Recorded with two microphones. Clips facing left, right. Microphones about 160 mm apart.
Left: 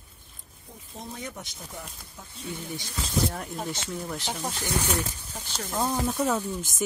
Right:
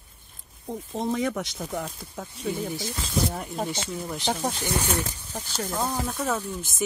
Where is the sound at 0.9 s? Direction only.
90° right.